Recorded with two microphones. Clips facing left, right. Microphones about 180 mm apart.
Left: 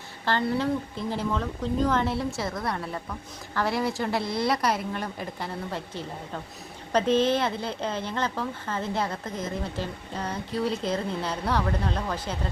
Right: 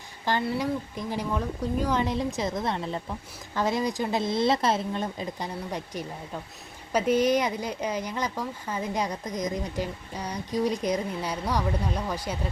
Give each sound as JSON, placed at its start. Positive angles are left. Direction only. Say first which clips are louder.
{"t": 0.3, "sound": "a woman's voice", "louder": "left 1 dB", "side_deg": -15}